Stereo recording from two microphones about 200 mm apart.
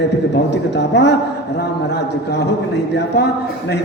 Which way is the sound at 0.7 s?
60° left (ahead or behind).